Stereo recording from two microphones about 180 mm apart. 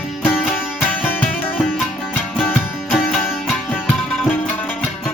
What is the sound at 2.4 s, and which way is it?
Music, 5° left (ahead or behind).